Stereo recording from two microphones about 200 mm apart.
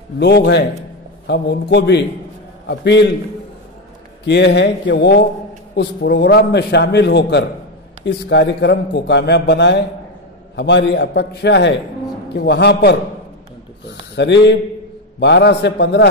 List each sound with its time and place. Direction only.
0.2 s a man's voice: 60° left (ahead or behind)
4.3 s a man's voice: 60° left (ahead or behind)